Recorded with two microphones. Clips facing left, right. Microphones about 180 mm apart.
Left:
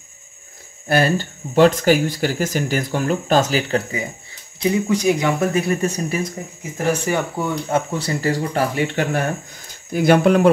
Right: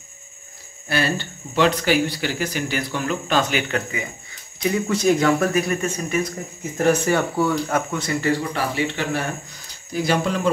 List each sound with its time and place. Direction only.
0.8 s speech: 45° left (ahead or behind)
4.8 s speech: 15° left (ahead or behind)
5.5 s speech: 30° left (ahead or behind)
6.9 s speech: 15° left (ahead or behind); by 10.5 s 60° left (ahead or behind)